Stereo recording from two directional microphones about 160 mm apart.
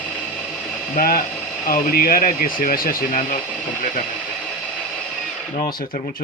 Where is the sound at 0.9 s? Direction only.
60° left (ahead or behind).